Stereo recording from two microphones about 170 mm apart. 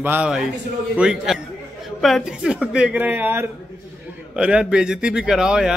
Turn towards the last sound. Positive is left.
turn(degrees=-5)  # may be behind; listen again after turning